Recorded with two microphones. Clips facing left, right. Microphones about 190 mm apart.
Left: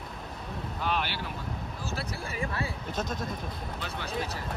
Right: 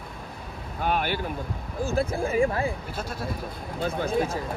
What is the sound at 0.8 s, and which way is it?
Boat, 50° right (ahead or behind).